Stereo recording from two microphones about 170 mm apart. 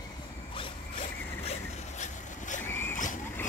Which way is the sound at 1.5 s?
45° left (ahead or behind).